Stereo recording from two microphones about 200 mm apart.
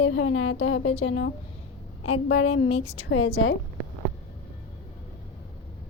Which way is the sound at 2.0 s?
90° left.